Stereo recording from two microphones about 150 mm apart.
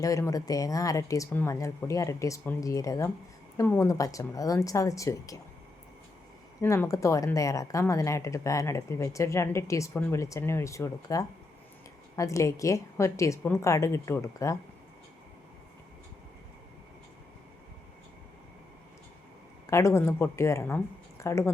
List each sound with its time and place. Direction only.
0.0 s a woman's voice: 20° left (ahead or behind)
6.6 s a woman's voice: 20° left (ahead or behind)
19.6 s speech: 20° left (ahead or behind)